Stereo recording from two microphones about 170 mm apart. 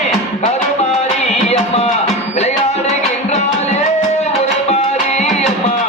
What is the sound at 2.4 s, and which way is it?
Music, 40° left (ahead or behind).